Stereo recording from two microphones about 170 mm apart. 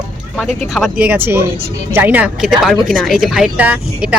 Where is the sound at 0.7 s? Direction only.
Centre (ahead or behind).